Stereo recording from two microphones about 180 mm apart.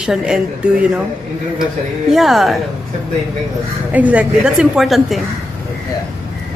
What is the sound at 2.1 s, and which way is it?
Speech, centre (ahead or behind).